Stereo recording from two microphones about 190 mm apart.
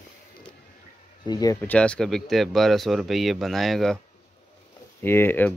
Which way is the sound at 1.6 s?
5° left (ahead or behind).